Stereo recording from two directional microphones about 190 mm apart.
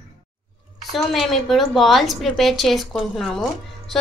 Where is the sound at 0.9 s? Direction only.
Centre (ahead or behind).